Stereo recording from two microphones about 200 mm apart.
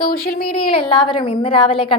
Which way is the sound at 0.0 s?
45° left (ahead or behind).